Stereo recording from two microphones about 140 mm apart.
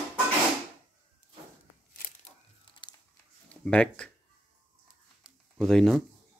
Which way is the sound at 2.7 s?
35° left (ahead or behind).